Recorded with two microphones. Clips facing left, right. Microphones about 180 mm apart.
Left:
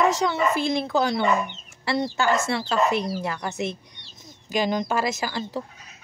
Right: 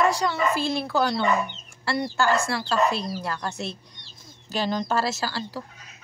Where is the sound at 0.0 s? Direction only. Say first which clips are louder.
Left 1 dB; 20° left (ahead or behind).